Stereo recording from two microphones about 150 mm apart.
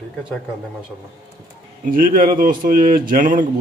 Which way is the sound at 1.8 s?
70° right (ahead or behind).